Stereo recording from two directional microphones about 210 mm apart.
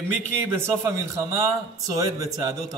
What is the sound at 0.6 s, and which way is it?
A man's voice, 15° right (ahead or behind).